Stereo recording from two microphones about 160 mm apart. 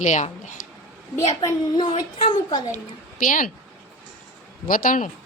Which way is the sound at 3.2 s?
55° left (ahead or behind).